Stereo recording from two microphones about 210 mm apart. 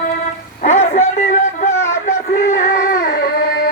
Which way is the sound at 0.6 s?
35° left (ahead or behind).